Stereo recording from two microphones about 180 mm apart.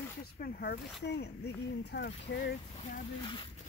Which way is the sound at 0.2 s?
60° left (ahead or behind).